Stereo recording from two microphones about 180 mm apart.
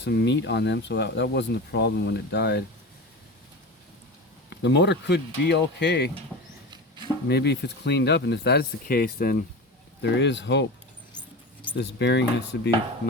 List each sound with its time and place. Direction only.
0.0 s speech: 65° left (ahead or behind)
4.4 s speech: 70° left (ahead or behind)
6.7 s a sound: 25° right (ahead or behind)
7.3 s speech: 70° left (ahead or behind); by 9.4 s 55° left (ahead or behind)
10.0 s speech: 80° left
11.8 s speech: 70° left (ahead or behind)